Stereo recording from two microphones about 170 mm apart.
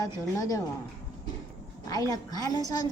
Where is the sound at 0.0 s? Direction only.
20° left (ahead or behind).